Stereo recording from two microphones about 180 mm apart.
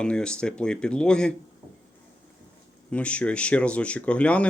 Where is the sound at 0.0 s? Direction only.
5° left (ahead or behind).